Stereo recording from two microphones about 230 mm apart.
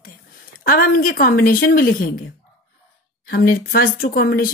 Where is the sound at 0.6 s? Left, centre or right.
Left.